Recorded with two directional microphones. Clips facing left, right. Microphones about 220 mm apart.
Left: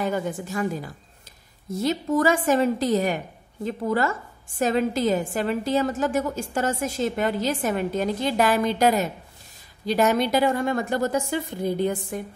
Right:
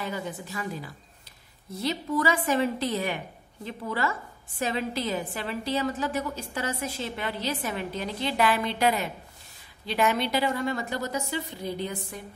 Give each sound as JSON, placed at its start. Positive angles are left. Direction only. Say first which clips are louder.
{"t": 0.0, "sound": "a woman's voice", "louder": "left 7 dB", "side_deg": 50}